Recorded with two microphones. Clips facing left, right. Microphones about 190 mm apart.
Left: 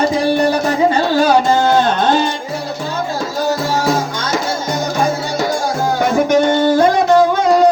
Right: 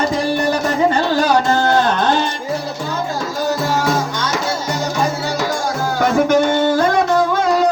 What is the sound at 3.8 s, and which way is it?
Music, 30° left (ahead or behind).